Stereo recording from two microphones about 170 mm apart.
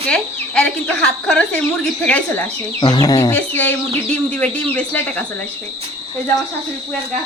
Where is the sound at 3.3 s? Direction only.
10° left (ahead or behind).